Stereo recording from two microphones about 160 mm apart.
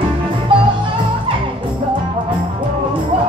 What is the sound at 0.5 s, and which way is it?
Music, 30° right (ahead or behind).